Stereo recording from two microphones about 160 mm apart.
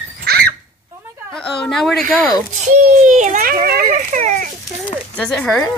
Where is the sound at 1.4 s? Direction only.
5° left (ahead or behind).